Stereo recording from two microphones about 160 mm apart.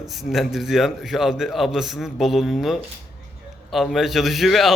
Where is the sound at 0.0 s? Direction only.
Centre (ahead or behind).